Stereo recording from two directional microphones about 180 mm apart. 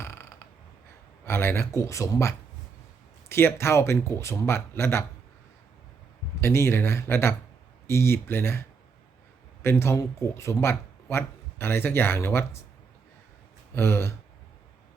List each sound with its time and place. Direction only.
0.0 s a sound: 15° left (ahead or behind)
1.2 s speech: 15° left (ahead or behind)
6.4 s speech: 15° left (ahead or behind)
9.6 s speech: 15° left (ahead or behind)
13.7 s speech: 15° left (ahead or behind)